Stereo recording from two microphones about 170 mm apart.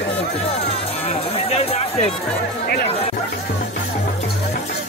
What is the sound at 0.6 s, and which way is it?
Music, 35° left (ahead or behind).